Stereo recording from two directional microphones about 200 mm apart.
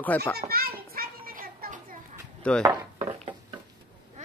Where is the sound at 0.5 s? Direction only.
50° right (ahead or behind).